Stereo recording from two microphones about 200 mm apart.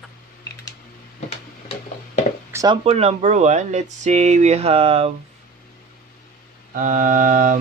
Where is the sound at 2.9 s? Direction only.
30° right (ahead or behind).